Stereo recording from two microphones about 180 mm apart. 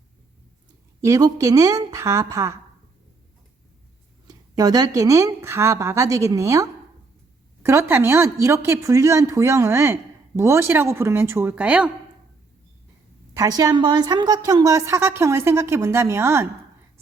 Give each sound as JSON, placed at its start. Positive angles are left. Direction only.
{"t": 1.0, "sound": "a woman's voice", "side_deg": -20}
{"t": 4.3, "sound": "a woman's voice", "side_deg": -20}
{"t": 13.3, "sound": "a woman's voice", "side_deg": -20}